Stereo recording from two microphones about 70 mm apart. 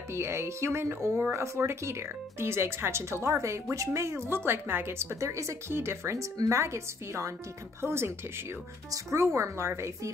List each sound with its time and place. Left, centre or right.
0.1 s speech: right